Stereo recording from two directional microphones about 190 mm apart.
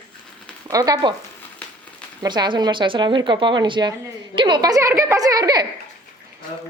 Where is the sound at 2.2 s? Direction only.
25° right (ahead or behind).